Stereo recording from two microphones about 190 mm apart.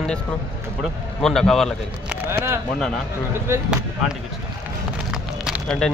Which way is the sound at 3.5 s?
5° right (ahead or behind).